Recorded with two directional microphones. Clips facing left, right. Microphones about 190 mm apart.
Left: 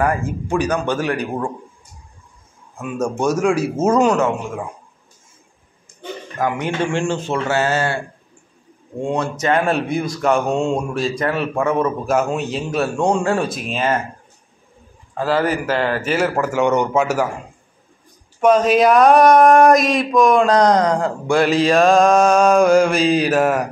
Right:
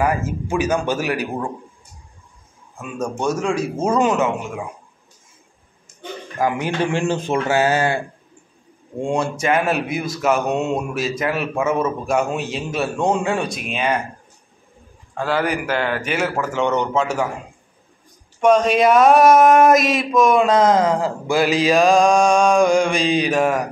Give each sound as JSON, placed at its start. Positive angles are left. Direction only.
{"t": 0.0, "sound": "speech", "side_deg": -5}
{"t": 3.0, "sound": "speech", "side_deg": 10}
{"t": 6.6, "sound": "speech", "side_deg": -15}
{"t": 9.0, "sound": "speech", "side_deg": -10}
{"t": 15.1, "sound": "speech", "side_deg": 0}
{"t": 18.4, "sound": "speech", "side_deg": 5}